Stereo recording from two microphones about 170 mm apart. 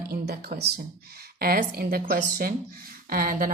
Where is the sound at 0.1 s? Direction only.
65° right (ahead or behind).